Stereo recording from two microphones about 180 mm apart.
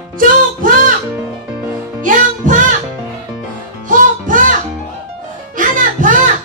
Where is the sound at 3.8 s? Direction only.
45° right (ahead or behind).